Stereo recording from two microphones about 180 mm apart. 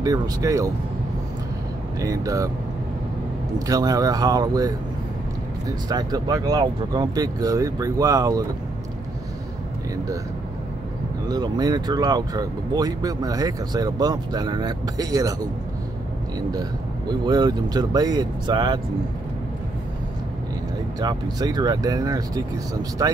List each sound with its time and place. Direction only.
0.0 s speech: 20° right (ahead or behind)
2.0 s speech: 20° right (ahead or behind)
3.5 s speech: 20° right (ahead or behind)
5.9 s speech: 20° right (ahead or behind)
11.2 s speech: 20° right (ahead or behind)
17.3 s speech: 20° right (ahead or behind)
21.0 s speech: 20° right (ahead or behind)